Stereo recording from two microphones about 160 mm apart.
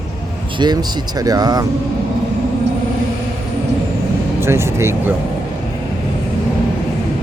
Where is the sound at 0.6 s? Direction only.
25° right (ahead or behind).